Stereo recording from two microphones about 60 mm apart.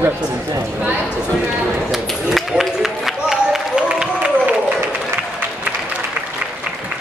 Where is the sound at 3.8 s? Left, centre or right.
Centre.